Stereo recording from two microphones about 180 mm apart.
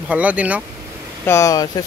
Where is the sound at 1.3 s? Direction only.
20° left (ahead or behind).